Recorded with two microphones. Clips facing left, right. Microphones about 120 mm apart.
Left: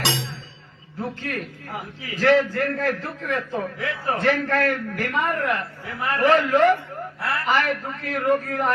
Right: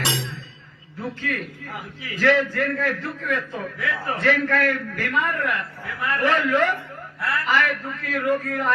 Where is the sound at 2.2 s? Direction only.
30° left (ahead or behind).